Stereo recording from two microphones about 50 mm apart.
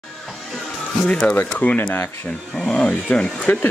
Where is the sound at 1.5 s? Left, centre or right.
Left.